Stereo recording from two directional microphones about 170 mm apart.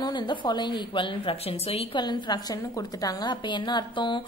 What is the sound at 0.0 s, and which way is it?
A woman's voice, 25° left (ahead or behind).